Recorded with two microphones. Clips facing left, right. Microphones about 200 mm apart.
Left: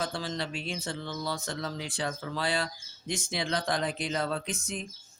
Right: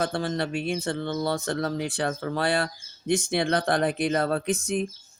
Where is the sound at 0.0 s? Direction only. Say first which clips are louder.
Right 7 dB; 55° right (ahead or behind).